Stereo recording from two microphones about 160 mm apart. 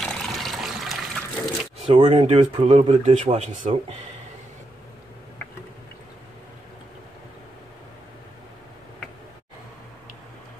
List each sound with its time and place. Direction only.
0.0 s water: centre (ahead or behind)
1.9 s speech: 35° right (ahead or behind)